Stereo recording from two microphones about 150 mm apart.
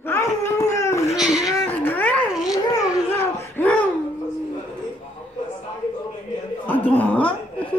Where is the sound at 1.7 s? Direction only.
10° left (ahead or behind).